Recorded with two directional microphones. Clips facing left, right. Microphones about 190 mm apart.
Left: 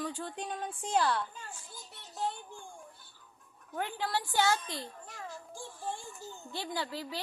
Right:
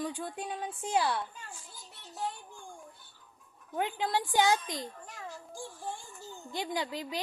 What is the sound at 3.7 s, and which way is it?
A woman's voice, 20° right (ahead or behind).